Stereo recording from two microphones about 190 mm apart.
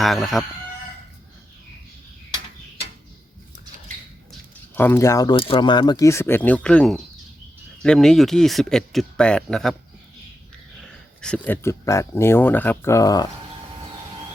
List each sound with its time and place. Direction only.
0.0 s speech: centre (ahead or behind)
4.3 s speech: 10° left (ahead or behind)
10.8 s speech: 5° left (ahead or behind)